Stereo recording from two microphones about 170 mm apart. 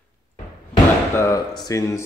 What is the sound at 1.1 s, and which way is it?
Speech, 15° left (ahead or behind).